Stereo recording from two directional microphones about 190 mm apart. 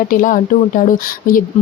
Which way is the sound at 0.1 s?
45° left (ahead or behind).